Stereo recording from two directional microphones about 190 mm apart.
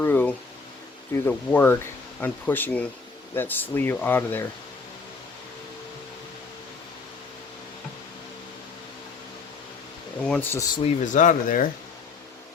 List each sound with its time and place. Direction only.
0.0 s a sound: 10° left (ahead or behind)
1.1 s speech: 15° left (ahead or behind)
10.2 s speech: 10° left (ahead or behind)
10.8 s speech: 35° left (ahead or behind)